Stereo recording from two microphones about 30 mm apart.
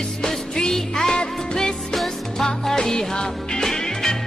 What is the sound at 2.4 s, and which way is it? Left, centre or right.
Music, centre.